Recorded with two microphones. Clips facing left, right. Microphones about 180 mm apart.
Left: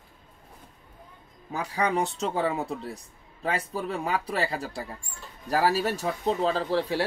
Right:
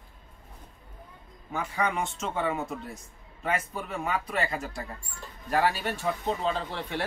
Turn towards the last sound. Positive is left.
turn(degrees=35)  # may be behind; listen again after turning